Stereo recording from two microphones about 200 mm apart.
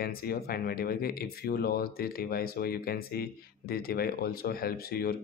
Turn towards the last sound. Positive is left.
turn(degrees=50)  # may be behind; listen again after turning